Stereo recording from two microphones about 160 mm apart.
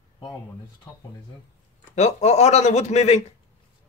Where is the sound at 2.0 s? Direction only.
45° left (ahead or behind).